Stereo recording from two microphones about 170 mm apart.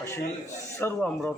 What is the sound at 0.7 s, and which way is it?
Speech, 10° left (ahead or behind).